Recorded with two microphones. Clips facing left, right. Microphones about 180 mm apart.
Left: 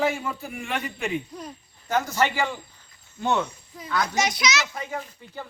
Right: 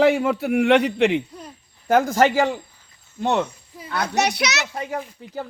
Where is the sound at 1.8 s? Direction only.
55° right (ahead or behind).